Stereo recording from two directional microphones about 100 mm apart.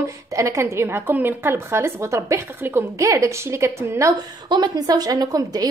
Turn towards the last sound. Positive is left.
turn(degrees=-40)  # may be behind; listen again after turning